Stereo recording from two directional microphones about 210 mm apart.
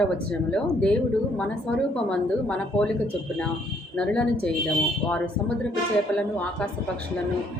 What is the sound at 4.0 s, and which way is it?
Speech, 5° left (ahead or behind).